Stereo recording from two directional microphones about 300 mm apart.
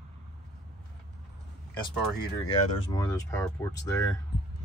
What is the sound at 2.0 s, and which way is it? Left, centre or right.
Speech, centre.